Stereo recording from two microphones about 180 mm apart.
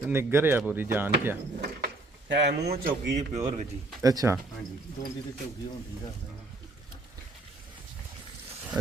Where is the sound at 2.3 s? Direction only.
70° right (ahead or behind); by 3.7 s 40° right (ahead or behind).